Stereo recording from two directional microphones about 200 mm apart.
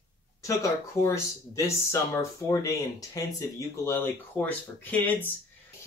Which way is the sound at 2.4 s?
15° left (ahead or behind).